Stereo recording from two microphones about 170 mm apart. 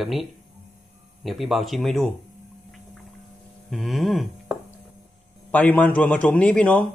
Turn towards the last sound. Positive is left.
turn(degrees=5)  # may be behind; listen again after turning